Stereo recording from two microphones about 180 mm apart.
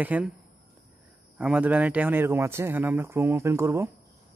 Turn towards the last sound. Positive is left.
turn(degrees=-15)  # may be behind; listen again after turning